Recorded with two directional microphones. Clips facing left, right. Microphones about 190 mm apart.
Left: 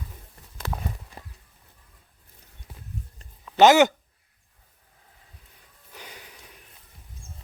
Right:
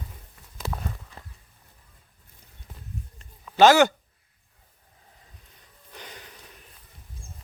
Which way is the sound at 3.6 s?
20° left (ahead or behind).